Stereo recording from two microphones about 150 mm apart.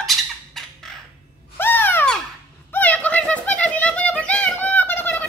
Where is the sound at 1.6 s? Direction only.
15° left (ahead or behind).